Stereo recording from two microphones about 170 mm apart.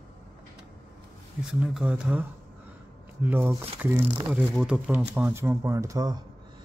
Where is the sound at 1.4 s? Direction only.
5° right (ahead or behind).